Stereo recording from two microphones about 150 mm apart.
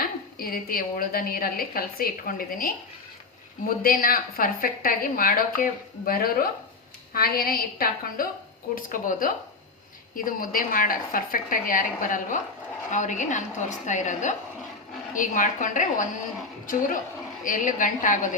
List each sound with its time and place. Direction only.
0.0 s a woman's voice: 80° left
3.8 s a woman's voice: 70° left (ahead or behind)
17.4 s a woman's voice: 60° left (ahead or behind)